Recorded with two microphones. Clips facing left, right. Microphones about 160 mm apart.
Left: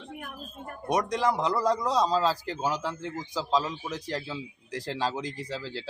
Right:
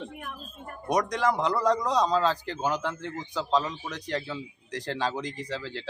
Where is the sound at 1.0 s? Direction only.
30° left (ahead or behind).